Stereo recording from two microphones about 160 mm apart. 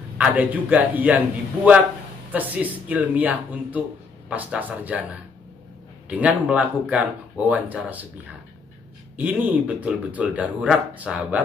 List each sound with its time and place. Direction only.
0.2 s speech: 10° right (ahead or behind)
2.3 s speech: 10° right (ahead or behind)
6.0 s speech: 10° right (ahead or behind)
9.1 s speech: 10° right (ahead or behind)